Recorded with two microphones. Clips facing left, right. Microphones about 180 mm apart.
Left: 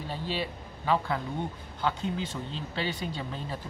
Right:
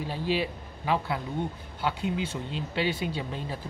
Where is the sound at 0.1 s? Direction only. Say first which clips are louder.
Right 4 dB; 10° right (ahead or behind).